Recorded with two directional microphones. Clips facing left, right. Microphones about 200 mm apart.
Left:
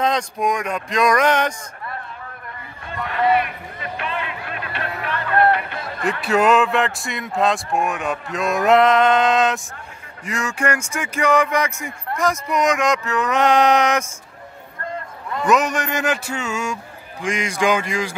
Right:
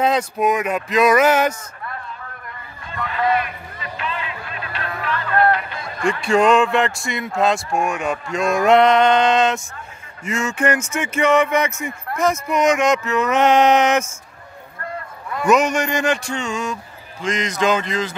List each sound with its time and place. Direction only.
0.0 s speech: 5° right (ahead or behind)
3.1 s a sound: 55° left (ahead or behind)
6.0 s speech: 5° left (ahead or behind)
15.4 s a man's voice: centre (ahead or behind)